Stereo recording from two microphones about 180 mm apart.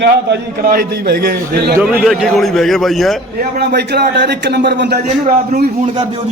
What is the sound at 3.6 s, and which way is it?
A man's voice, 70° right (ahead or behind).